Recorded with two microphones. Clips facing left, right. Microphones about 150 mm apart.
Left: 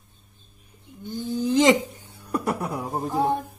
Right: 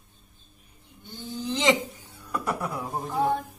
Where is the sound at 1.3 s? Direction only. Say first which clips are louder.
Left 6 dB; 45° left (ahead or behind).